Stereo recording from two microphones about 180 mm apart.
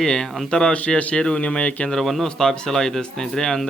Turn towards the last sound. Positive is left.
turn(degrees=5)  # may be behind; listen again after turning